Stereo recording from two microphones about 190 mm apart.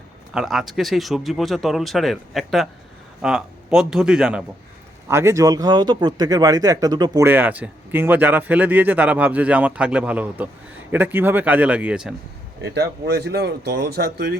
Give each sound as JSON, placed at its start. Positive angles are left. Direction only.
{"t": 0.3, "sound": "speech", "side_deg": 0}
{"t": 5.0, "sound": "speech", "side_deg": -15}
{"t": 12.6, "sound": "speech", "side_deg": -60}